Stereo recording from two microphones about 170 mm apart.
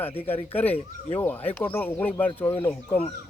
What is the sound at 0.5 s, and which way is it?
Speech, 10° left (ahead or behind).